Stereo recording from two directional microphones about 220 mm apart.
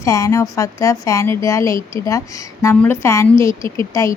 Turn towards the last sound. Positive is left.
turn(degrees=15)  # may be behind; listen again after turning